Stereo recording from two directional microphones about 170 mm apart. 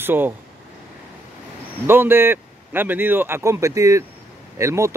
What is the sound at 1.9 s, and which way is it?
Speech, 15° right (ahead or behind).